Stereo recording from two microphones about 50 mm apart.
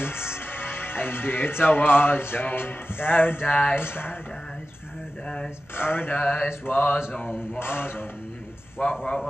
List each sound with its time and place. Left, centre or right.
0.0 s speech: left
5.8 s speech: left
6.1 s speech: left
6.6 s speech: left